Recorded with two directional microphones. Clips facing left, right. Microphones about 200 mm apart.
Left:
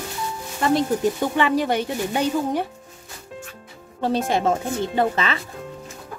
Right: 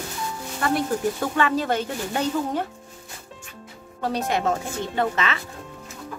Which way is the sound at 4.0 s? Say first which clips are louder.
Left 3 dB; 25° left (ahead or behind).